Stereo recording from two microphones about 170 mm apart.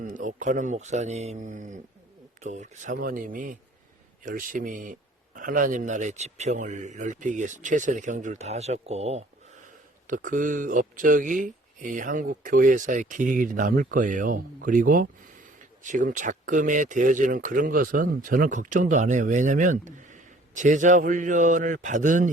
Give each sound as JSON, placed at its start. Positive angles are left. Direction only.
{"t": 0.0, "sound": "a man's voice", "side_deg": -50}
{"t": 10.2, "sound": "a man's voice", "side_deg": -50}